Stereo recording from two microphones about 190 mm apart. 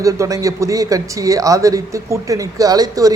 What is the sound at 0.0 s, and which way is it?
A man's voice, 15° right (ahead or behind).